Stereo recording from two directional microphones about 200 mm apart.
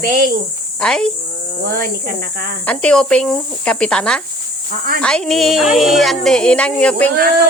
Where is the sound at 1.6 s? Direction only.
45° right (ahead or behind).